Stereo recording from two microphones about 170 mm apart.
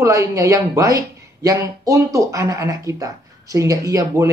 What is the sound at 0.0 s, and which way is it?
Speech, 20° right (ahead or behind).